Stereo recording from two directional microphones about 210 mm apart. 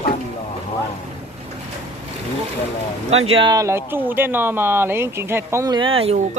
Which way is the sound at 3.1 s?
30° right (ahead or behind).